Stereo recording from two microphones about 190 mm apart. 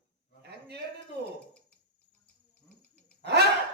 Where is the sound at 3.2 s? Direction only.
60° right (ahead or behind).